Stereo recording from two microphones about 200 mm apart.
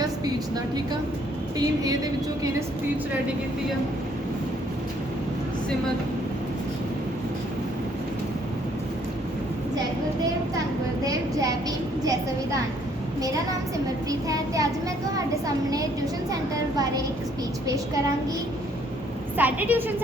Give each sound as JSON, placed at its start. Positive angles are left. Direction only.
{"t": 1.5, "sound": "a woman's voice", "side_deg": -20}
{"t": 11.0, "sound": "a sound", "side_deg": -15}
{"t": 14.1, "sound": "speech", "side_deg": -15}
{"t": 16.7, "sound": "speech", "side_deg": -20}
{"t": 19.4, "sound": "speech", "side_deg": -10}